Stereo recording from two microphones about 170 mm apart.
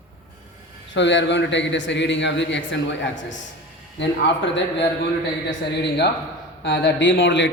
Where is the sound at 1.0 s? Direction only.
90° left.